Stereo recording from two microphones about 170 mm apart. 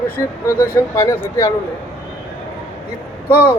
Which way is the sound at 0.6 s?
15° left (ahead or behind).